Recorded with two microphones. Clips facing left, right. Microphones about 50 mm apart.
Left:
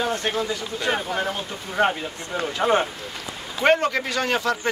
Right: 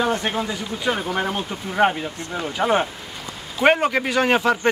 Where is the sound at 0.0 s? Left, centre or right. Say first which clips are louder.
Right 2 dB; centre.